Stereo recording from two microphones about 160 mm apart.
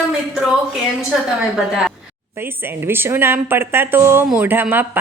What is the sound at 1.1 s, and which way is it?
A woman's voice, 5° right (ahead or behind).